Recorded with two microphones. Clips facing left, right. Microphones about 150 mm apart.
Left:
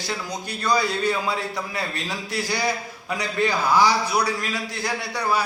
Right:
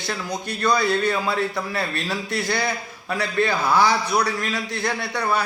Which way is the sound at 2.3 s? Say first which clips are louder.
Right 1 dB; 60° right (ahead or behind).